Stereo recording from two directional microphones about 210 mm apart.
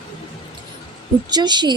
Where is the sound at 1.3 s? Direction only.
20° right (ahead or behind).